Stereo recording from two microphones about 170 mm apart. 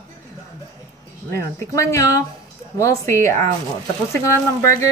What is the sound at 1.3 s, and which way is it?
Speech, 15° left (ahead or behind).